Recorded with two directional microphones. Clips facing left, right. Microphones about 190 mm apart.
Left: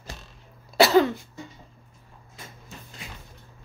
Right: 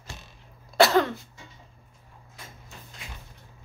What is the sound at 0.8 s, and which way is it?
Cough, 5° left (ahead or behind).